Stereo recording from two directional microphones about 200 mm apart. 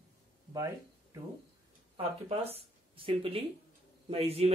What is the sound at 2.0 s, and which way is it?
A man's voice, 30° right (ahead or behind).